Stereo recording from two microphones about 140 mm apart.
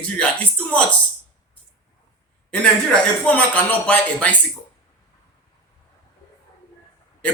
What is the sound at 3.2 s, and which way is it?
Speech, 10° left (ahead or behind).